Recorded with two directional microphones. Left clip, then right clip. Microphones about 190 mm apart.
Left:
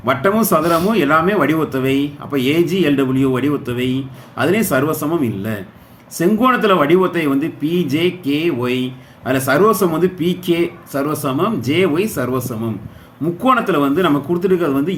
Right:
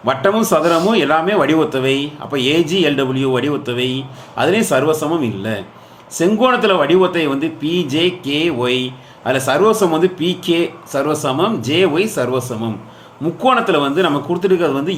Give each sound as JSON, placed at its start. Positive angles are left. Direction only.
{"t": 0.0, "sound": "speech", "side_deg": 15}